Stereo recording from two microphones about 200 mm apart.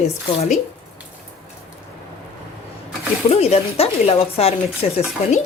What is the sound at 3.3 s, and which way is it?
Speech, 30° left (ahead or behind).